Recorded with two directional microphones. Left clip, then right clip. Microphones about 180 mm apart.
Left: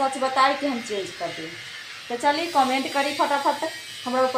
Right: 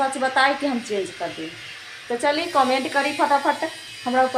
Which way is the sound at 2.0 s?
20° right (ahead or behind).